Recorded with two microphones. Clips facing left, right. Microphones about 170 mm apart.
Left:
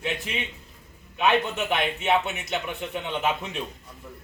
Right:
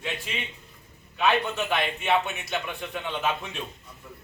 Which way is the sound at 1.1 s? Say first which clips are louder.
Left 1 dB; 15° left (ahead or behind).